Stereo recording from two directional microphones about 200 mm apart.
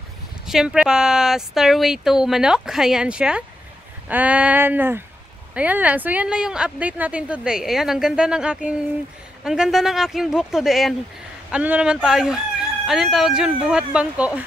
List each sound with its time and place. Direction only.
0.5 s speech: 5° right (ahead or behind)